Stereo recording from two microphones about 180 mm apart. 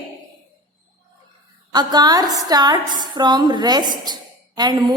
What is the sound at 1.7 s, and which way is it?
A woman's voice, 20° right (ahead or behind).